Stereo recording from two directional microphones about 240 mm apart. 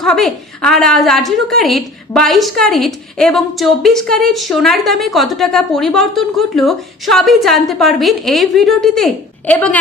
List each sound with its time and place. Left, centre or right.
0.0 s a woman's voice: centre